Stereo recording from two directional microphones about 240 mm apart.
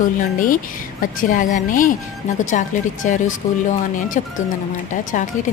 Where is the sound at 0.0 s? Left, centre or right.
Left.